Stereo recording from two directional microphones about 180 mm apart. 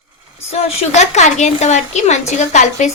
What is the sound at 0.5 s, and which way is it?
Speech, 35° left (ahead or behind).